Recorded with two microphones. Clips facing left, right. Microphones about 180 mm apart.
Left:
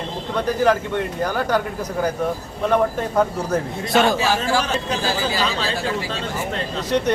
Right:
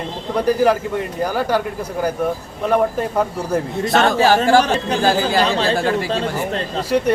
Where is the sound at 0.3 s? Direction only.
10° right (ahead or behind).